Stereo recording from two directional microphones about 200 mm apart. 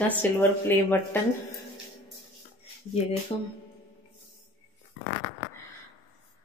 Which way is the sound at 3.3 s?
25° left (ahead or behind).